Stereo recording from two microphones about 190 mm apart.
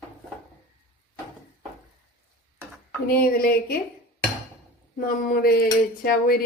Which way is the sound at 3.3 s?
50° left (ahead or behind).